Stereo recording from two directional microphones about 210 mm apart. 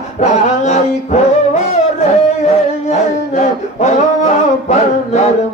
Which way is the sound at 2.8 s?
35° left (ahead or behind).